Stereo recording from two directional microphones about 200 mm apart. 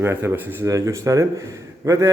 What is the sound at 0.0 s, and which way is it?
A man's voice, 10° right (ahead or behind).